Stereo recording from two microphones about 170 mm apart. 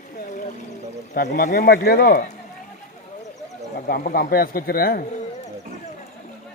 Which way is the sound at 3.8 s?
60° left (ahead or behind).